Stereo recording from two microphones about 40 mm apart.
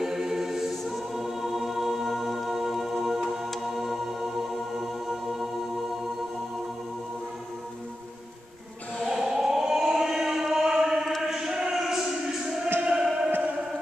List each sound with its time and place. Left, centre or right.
0.0 s music: centre
8.9 s chant: centre
12.8 s music: centre